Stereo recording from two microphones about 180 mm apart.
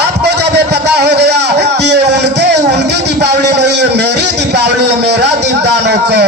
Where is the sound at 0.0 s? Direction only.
70° right (ahead or behind).